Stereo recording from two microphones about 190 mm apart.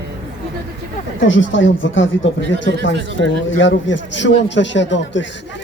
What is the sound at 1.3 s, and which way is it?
Speech, 85° left.